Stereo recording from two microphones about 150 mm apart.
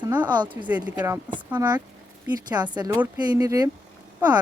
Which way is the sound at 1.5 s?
25° right (ahead or behind).